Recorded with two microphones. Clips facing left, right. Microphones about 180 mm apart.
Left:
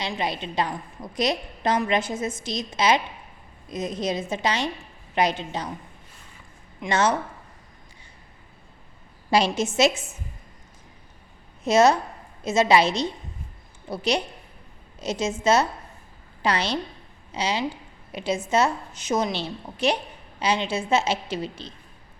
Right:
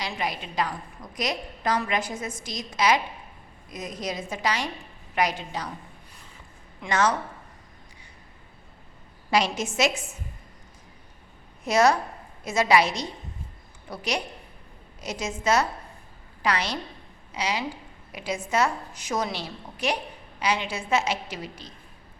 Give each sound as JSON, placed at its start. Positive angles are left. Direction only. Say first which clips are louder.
{"t": 0.0, "sound": "a woman's voice", "louder": "left 3 dB", "side_deg": 25}
{"t": 6.8, "sound": "a woman's voice", "louder": "left 1 dB", "side_deg": 25}
{"t": 9.3, "sound": "a woman's voice", "louder": "left 3 dB", "side_deg": 30}
{"t": 11.6, "sound": "a woman's voice", "louder": "left 3 dB", "side_deg": 25}